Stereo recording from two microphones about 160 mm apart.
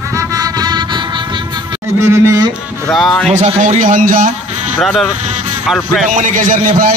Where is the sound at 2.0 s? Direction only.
20° right (ahead or behind).